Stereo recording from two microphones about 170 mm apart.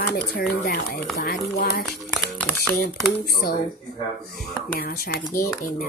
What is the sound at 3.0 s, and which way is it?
Speech, 65° left (ahead or behind).